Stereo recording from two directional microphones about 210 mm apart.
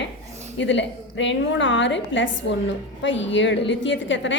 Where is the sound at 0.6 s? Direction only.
60° left (ahead or behind).